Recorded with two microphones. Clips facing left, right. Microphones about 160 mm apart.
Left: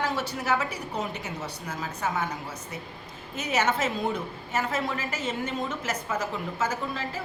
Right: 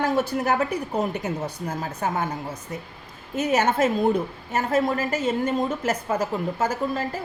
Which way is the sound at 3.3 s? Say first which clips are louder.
Right 5 dB; 50° right (ahead or behind).